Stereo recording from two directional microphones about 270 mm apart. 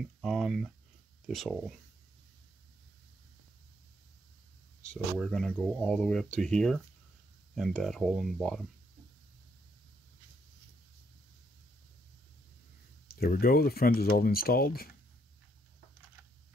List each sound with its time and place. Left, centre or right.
0.0 s speech: centre
4.9 s speech: centre
13.1 s speech: left